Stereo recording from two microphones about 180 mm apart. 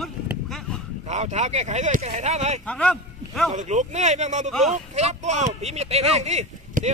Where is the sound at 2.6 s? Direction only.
5° left (ahead or behind).